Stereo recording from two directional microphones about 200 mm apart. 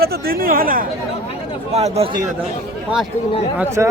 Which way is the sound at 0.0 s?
50° right (ahead or behind).